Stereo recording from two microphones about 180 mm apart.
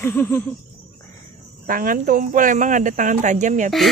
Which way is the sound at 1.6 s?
50° right (ahead or behind).